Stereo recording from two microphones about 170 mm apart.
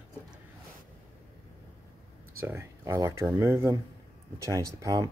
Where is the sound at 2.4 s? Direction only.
15° right (ahead or behind).